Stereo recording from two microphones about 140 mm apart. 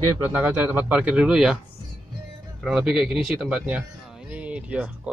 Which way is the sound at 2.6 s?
5° right (ahead or behind).